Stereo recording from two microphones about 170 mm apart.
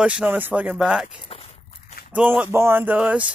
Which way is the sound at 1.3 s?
35° left (ahead or behind).